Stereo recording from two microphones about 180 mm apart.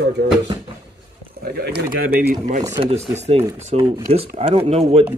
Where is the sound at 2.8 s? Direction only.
35° right (ahead or behind).